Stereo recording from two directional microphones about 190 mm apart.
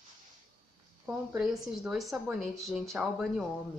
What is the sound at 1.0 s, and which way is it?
Speech, 5° right (ahead or behind).